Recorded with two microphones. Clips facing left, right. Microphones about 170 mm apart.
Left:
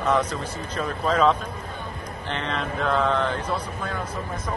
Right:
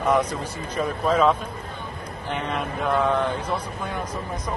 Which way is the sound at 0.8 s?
10° right (ahead or behind).